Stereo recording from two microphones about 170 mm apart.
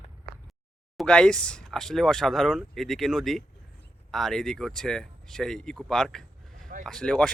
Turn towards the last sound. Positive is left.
turn(degrees=5)  # may be behind; listen again after turning